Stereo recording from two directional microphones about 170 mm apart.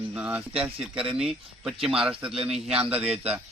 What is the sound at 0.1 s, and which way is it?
A man's voice, 10° right (ahead or behind).